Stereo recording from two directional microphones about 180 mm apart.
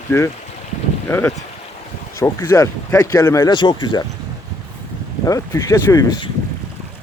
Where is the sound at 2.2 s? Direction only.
15° left (ahead or behind).